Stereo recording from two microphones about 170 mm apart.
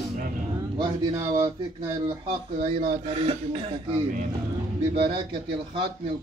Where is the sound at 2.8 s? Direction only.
40° right (ahead or behind).